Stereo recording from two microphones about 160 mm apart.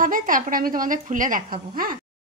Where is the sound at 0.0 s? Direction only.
60° right (ahead or behind).